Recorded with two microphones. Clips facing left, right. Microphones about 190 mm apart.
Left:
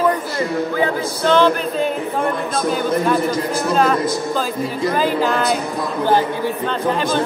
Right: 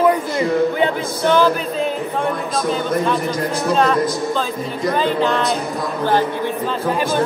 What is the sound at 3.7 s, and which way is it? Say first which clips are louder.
Speech: even; centre (ahead or behind).